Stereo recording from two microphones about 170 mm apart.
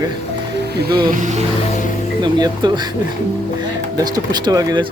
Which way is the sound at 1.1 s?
50° right (ahead or behind).